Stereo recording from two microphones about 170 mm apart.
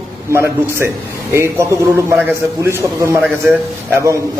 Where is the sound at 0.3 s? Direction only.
15° right (ahead or behind).